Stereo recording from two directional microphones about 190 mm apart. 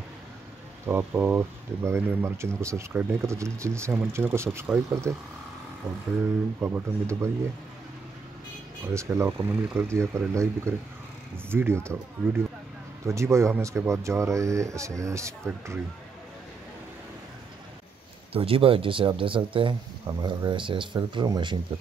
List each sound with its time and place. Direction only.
0.8 s speech: 10° right (ahead or behind)
6.6 s speech: 15° right (ahead or behind)
8.9 s speech: 15° right (ahead or behind)
18.3 s speech: 30° right (ahead or behind)